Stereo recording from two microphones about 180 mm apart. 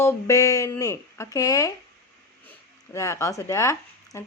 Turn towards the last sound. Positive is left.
turn(degrees=15)  # may be behind; listen again after turning